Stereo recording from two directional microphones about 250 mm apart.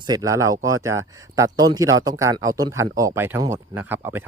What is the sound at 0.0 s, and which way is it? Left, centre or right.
Speech, centre.